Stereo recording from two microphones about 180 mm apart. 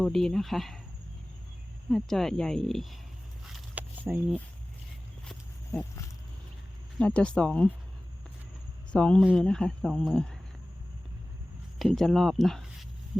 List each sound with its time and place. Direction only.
0.0 s speech: centre (ahead or behind)
1.9 s speech: centre (ahead or behind)
3.4 s a sound: 10° right (ahead or behind)
5.2 s a sound: 5° left (ahead or behind)
7.0 s speech: 5° left (ahead or behind)
8.9 s speech: 5° left (ahead or behind)
11.8 s speech: centre (ahead or behind)